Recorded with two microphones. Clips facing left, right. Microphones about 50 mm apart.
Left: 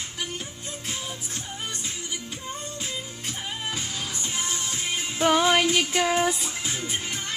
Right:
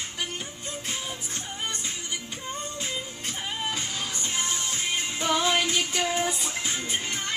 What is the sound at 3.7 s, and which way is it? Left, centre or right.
Music, centre.